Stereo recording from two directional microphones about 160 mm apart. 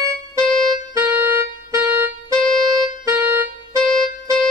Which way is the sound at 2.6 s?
30° right (ahead or behind).